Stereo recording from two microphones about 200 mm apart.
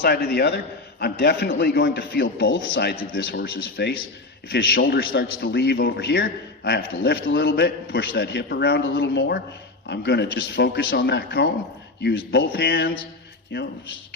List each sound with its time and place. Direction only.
0.0 s a man's voice: 55° left (ahead or behind)